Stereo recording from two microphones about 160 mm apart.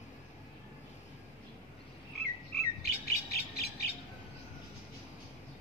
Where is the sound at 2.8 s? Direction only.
75° left (ahead or behind).